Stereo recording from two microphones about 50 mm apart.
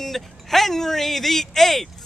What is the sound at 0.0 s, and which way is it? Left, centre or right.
Speech, centre.